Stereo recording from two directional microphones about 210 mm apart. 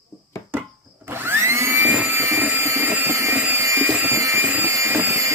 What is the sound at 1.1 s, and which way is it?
Vacuum cleaner, 10° right (ahead or behind).